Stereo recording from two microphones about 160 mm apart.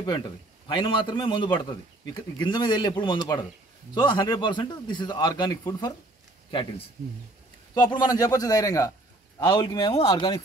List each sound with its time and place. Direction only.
0.7 s a man's voice: 30° left (ahead or behind)
7.8 s a man's voice: 25° left (ahead or behind)